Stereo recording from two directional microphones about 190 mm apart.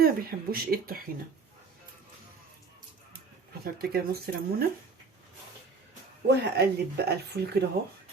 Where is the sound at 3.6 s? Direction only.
55° right (ahead or behind).